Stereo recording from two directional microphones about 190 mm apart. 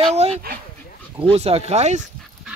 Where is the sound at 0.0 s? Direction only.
35° right (ahead or behind).